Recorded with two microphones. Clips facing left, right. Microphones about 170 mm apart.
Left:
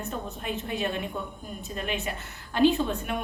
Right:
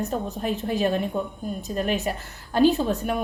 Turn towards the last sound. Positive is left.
turn(degrees=-40)  # may be behind; listen again after turning